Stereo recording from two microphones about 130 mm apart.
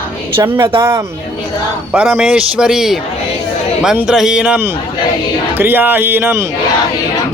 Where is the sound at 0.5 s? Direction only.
40° right (ahead or behind).